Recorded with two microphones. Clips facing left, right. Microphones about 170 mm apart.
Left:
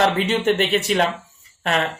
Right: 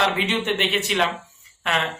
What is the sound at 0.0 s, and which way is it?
A man's voice, 40° left (ahead or behind).